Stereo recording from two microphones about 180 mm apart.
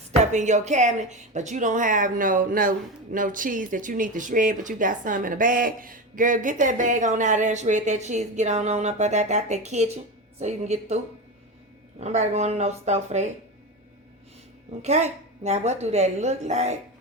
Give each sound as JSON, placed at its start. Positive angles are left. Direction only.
{"t": 0.3, "sound": "a woman's voice", "side_deg": -40}
{"t": 14.8, "sound": "a woman's voice", "side_deg": -40}